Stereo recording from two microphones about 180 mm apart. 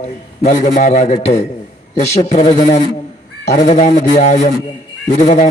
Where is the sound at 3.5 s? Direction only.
40° left (ahead or behind).